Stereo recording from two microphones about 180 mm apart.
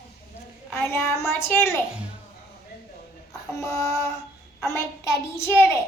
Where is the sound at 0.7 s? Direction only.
15° left (ahead or behind).